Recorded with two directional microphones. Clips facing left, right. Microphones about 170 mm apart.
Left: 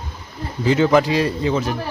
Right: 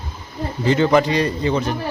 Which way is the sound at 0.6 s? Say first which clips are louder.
Even; 5° left (ahead or behind).